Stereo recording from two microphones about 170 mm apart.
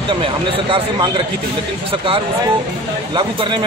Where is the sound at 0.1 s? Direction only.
30° right (ahead or behind).